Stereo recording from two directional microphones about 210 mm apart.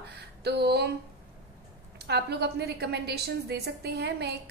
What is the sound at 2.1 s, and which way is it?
A woman's voice, 50° right (ahead or behind).